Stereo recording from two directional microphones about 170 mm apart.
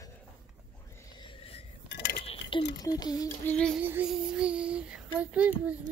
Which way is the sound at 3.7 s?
10° right (ahead or behind).